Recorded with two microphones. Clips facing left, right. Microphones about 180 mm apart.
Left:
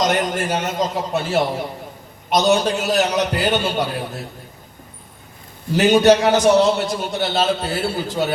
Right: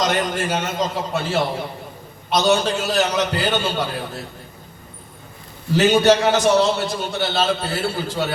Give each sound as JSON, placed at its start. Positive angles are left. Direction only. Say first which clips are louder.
{"t": 0.0, "sound": "a man's voice", "louder": "left 2 dB", "side_deg": 15}
{"t": 5.7, "sound": "a man's voice", "louder": "left 2 dB", "side_deg": 15}